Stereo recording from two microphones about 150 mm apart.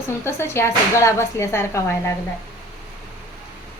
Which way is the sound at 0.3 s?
15° left (ahead or behind).